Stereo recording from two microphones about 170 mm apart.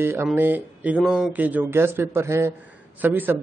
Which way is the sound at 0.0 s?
15° right (ahead or behind).